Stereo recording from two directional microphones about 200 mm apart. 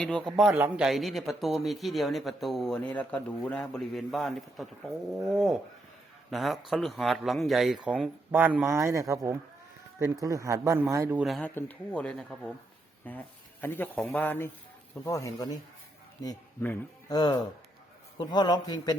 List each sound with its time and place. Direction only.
0.0 s speech: 5° left (ahead or behind)
0.5 s a man's voice: 10° right (ahead or behind)
0.9 s a man's voice: centre (ahead or behind)
11.3 s a man's voice: 5° left (ahead or behind)